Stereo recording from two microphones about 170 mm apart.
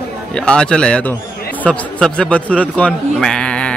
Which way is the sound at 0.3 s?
5° left (ahead or behind).